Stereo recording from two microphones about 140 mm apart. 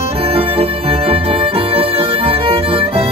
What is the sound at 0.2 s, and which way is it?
Music, 45° right (ahead or behind).